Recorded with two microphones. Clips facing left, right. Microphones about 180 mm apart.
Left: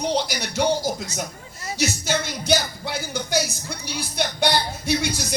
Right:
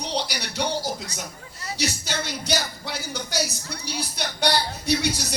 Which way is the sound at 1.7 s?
50° left (ahead or behind).